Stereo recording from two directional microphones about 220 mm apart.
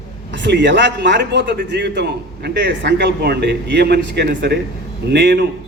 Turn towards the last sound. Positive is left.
turn(degrees=-50)  # may be behind; listen again after turning